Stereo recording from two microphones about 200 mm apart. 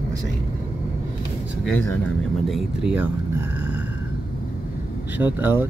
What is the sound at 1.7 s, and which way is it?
Speech, 10° left (ahead or behind).